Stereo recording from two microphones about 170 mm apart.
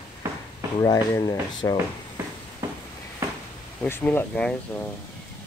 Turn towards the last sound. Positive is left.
turn(degrees=10)  # may be behind; listen again after turning